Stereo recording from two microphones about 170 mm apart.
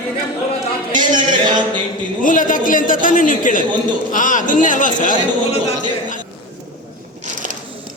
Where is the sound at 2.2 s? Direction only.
50° left (ahead or behind).